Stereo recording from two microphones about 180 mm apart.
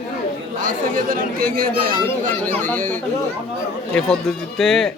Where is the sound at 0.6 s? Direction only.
50° right (ahead or behind).